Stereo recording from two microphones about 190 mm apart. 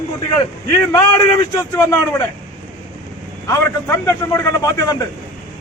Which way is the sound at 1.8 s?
15° left (ahead or behind).